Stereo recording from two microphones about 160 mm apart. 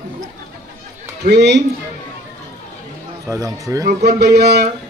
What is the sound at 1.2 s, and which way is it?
Speech, 90° right.